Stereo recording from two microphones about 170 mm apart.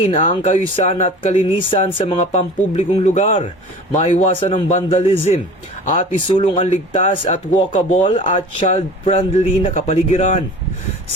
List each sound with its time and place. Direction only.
0.0 s a man's voice: 40° left (ahead or behind)
4.4 s a man's voice: 35° left (ahead or behind)
8.0 s speech: 30° left (ahead or behind)